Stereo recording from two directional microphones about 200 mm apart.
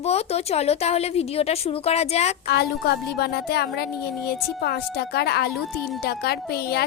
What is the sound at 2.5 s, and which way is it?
Speech, 55° left (ahead or behind).